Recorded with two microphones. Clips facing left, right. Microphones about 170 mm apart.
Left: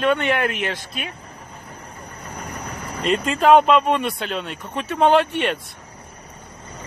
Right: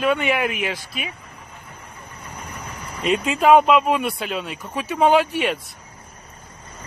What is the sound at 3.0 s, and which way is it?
Speech, 5° right (ahead or behind).